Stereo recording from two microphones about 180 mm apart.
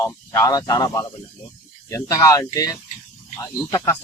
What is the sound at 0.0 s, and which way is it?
Speech, 15° left (ahead or behind).